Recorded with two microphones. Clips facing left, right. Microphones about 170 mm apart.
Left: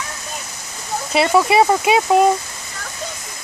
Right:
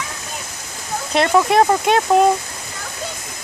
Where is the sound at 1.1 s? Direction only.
5° left (ahead or behind).